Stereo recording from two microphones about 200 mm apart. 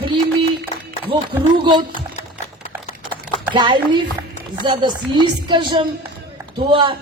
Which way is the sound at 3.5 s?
25° right (ahead or behind).